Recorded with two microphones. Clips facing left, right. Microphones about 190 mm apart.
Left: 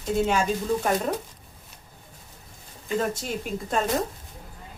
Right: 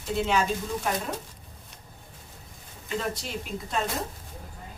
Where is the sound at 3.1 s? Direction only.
45° left (ahead or behind).